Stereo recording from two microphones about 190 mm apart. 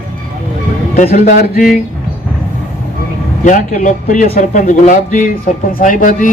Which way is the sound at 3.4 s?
40° left (ahead or behind).